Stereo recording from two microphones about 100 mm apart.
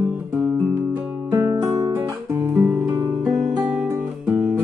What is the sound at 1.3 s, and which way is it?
Music, 25° right (ahead or behind).